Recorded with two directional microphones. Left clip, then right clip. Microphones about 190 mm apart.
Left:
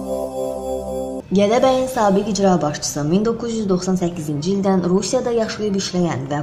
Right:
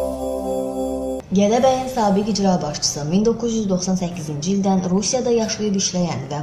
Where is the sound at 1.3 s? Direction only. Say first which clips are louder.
Left 1 dB; 55° left (ahead or behind).